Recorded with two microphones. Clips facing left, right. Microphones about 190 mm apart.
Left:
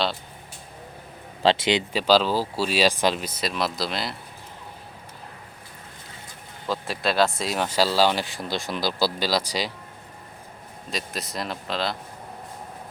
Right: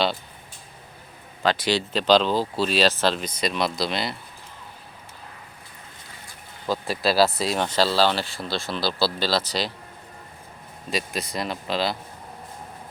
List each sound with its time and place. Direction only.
1.4 s speech: 25° left (ahead or behind)
1.9 s speech: 10° left (ahead or behind)
6.7 s speech: centre (ahead or behind)
10.9 s speech: centre (ahead or behind)